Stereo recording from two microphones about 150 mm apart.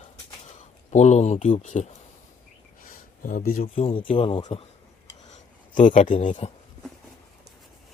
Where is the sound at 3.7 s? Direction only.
35° left (ahead or behind).